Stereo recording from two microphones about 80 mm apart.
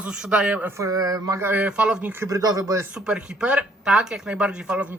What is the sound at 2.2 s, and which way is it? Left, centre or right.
Speech, right.